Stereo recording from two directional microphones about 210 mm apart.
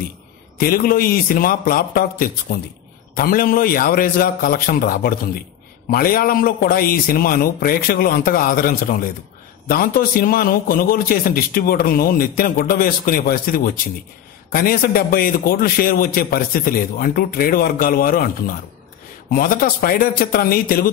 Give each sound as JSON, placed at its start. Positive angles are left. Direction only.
{"t": 0.6, "sound": "a man's voice", "side_deg": 45}
{"t": 19.3, "sound": "a man's voice", "side_deg": 45}